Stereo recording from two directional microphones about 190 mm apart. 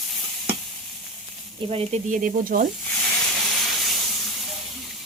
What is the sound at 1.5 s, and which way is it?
Speech, 30° right (ahead or behind).